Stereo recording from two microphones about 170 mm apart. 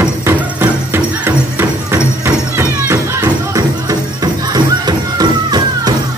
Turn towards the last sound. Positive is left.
turn(degrees=-25)  # may be behind; listen again after turning